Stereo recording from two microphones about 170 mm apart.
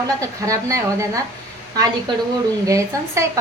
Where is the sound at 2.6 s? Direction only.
20° right (ahead or behind).